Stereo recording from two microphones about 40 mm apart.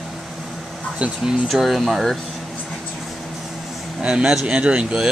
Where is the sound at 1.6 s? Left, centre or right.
Centre.